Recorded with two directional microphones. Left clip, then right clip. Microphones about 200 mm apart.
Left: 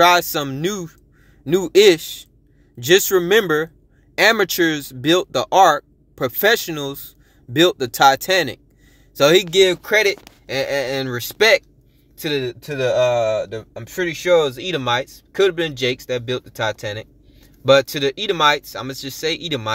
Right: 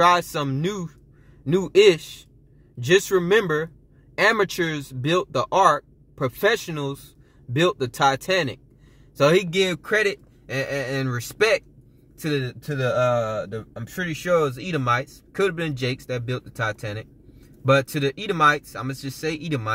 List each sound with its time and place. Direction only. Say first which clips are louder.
0.0 s speech: left 4 dB; 15° left (ahead or behind)
9.5 s speech: left 8 dB; 35° left (ahead or behind)
9.8 s speech: left 5 dB; 20° left (ahead or behind)
13.8 s speech: left 7 dB; 20° left (ahead or behind)